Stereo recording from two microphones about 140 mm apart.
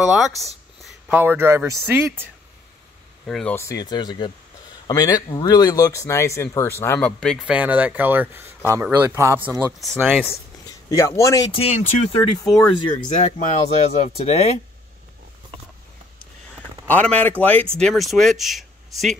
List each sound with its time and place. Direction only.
0.0 s speech: 5° right (ahead or behind)
3.3 s speech: 5° left (ahead or behind)
3.5 s speech: 20° left (ahead or behind)
7.1 s speech: 5° left (ahead or behind)
7.4 s speech: 10° right (ahead or behind)
10.9 s speech: 20° left (ahead or behind)
11.5 s speech: 45° left (ahead or behind)
12.2 s speech: 30° left (ahead or behind)
13.1 s speech: 55° left (ahead or behind)
16.8 s speech: 10° left (ahead or behind)